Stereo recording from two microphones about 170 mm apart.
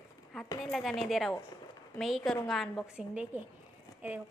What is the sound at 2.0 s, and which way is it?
A woman's voice, centre (ahead or behind).